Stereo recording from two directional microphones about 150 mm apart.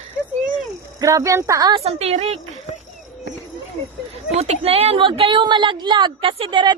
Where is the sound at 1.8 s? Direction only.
45° right (ahead or behind).